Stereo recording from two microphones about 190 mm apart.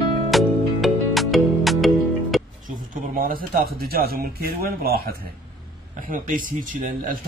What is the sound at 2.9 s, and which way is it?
A man's voice, 50° right (ahead or behind).